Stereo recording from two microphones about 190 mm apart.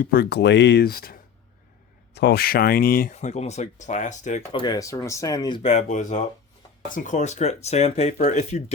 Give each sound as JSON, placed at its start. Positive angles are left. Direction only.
{"t": 0.0, "sound": "speech", "side_deg": 50}
{"t": 4.6, "sound": "speech", "side_deg": 20}
{"t": 5.6, "sound": "speech", "side_deg": 35}